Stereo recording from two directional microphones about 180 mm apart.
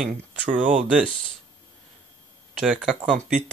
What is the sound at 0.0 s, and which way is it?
Speech, 5° right (ahead or behind).